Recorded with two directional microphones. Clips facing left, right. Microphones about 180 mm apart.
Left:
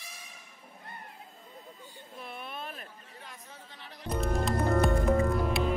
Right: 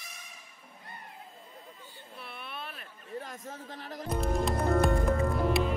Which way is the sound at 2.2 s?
40° left (ahead or behind).